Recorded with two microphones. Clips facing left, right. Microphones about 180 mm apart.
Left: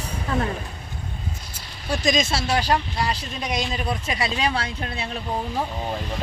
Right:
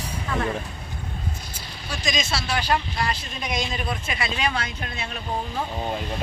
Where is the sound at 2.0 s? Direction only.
40° left (ahead or behind).